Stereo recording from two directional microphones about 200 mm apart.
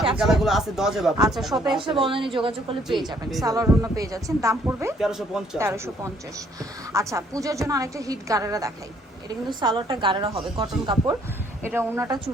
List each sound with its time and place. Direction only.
0.2 s a man's voice: centre (ahead or behind)
1.8 s a woman's voice: 25° right (ahead or behind)
4.9 s a man's voice: centre (ahead or behind)
5.5 s a woman's voice: 15° right (ahead or behind)
11.6 s a woman's voice: 10° right (ahead or behind)